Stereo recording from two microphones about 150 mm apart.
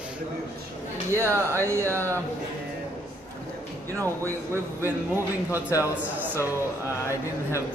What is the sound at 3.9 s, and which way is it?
A man's voice, 20° right (ahead or behind).